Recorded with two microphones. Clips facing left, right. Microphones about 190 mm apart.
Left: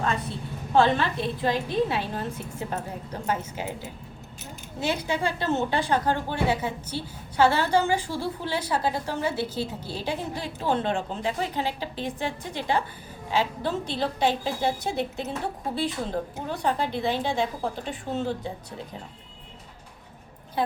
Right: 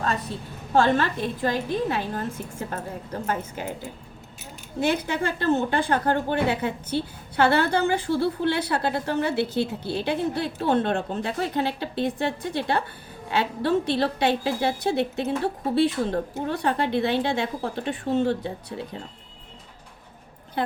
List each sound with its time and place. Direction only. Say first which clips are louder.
0.0 s a woman's voice: right 1 dB; 40° right (ahead or behind)
4.8 s a woman's voice: right 3 dB; 55° right (ahead or behind)